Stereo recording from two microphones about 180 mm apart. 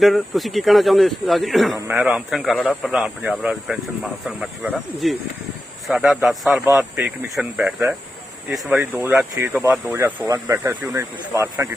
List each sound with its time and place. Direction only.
0.0 s a man's voice: centre (ahead or behind); by 11.7 s 15° right (ahead or behind)